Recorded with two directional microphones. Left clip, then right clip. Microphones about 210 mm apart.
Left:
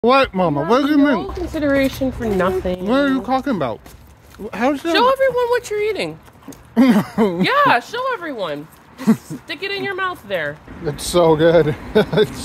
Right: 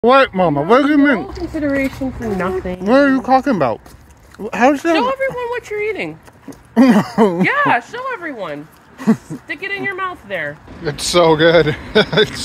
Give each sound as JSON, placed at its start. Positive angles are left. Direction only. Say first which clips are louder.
{"t": 0.0, "sound": "speech", "louder": "right 3 dB", "side_deg": -10}
{"t": 1.2, "sound": "speech", "louder": "even", "side_deg": 10}
{"t": 2.8, "sound": "speech", "louder": "right 8 dB", "side_deg": -25}
{"t": 4.9, "sound": "speech", "louder": "left 2 dB", "side_deg": 20}
{"t": 6.7, "sound": "speech", "louder": "right 3 dB", "side_deg": -20}
{"t": 7.4, "sound": "speech", "louder": "even", "side_deg": 20}
{"t": 8.9, "sound": "speech", "louder": "right 1 dB", "side_deg": -10}
{"t": 9.5, "sound": "speech", "louder": "right 2 dB", "side_deg": 15}